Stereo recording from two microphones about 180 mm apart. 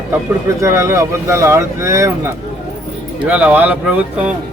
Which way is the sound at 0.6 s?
15° right (ahead or behind).